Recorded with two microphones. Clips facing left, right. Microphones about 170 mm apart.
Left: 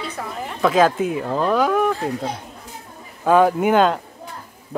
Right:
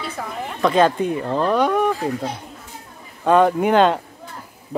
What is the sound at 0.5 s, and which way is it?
Speech, 5° left (ahead or behind).